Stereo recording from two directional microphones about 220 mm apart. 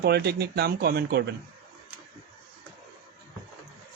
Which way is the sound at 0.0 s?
45° right (ahead or behind).